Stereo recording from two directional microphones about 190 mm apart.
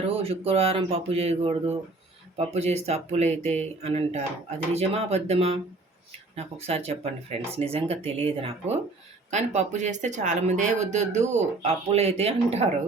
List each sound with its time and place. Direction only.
0.0 s speech: 30° right (ahead or behind)